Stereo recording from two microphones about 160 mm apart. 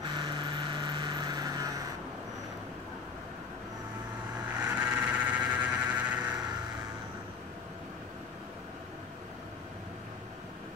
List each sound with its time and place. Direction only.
0.0 s vehicle: 25° right (ahead or behind)
4.6 s vehicle: 10° right (ahead or behind)